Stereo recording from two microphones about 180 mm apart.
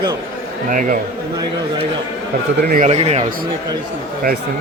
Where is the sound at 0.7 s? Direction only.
50° right (ahead or behind).